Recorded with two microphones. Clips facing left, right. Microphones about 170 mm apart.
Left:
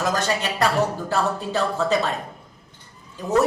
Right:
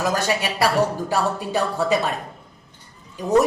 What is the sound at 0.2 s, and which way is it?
Speech, 10° right (ahead or behind).